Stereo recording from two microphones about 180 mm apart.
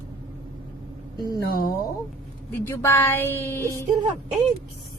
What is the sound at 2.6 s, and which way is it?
Speech, 15° left (ahead or behind).